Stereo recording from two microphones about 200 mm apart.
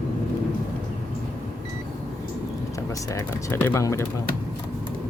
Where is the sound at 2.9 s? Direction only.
15° left (ahead or behind).